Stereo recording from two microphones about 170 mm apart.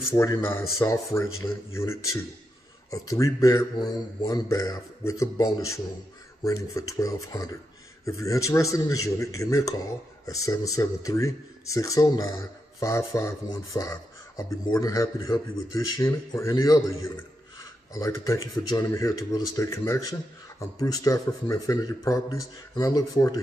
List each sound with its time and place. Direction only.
0.1 s speech: 15° left (ahead or behind)